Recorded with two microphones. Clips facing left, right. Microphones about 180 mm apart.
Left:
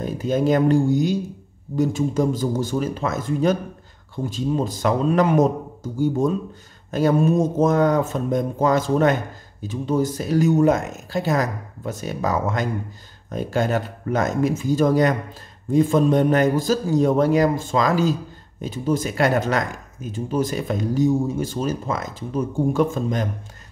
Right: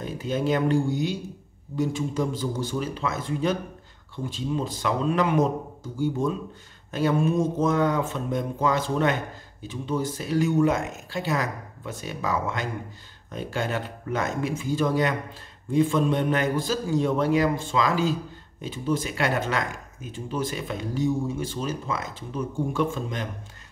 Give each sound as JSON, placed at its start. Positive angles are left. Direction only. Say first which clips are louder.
{"t": 0.0, "sound": "a man's voice", "louder": "left 6 dB", "side_deg": 45}